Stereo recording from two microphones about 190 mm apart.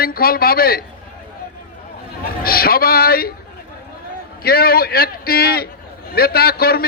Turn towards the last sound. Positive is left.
turn(degrees=55)  # may be behind; listen again after turning